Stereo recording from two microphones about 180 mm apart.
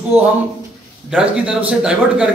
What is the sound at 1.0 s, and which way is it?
A man's voice, 5° right (ahead or behind).